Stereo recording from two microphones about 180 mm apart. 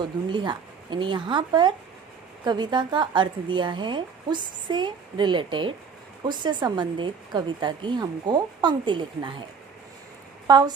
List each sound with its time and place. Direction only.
0.3 s speech: 25° right (ahead or behind)
10.4 s speech: 20° right (ahead or behind)